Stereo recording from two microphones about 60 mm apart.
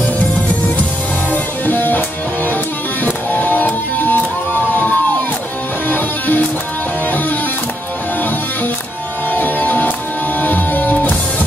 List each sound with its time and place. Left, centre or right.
1.3 s music: left
5.9 s music: left
9.3 s music: left